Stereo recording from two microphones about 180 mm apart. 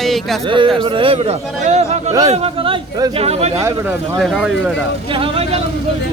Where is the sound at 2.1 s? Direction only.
20° right (ahead or behind).